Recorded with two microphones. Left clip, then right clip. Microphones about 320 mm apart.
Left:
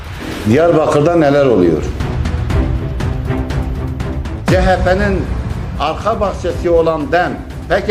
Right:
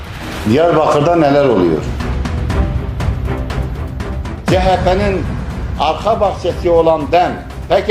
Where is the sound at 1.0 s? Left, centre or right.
Left.